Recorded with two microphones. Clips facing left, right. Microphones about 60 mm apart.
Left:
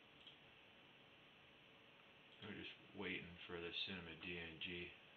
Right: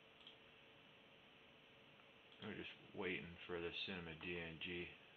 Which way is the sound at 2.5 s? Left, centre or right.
Centre.